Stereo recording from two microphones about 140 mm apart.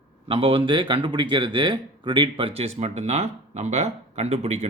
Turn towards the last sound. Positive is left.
turn(degrees=-50)  # may be behind; listen again after turning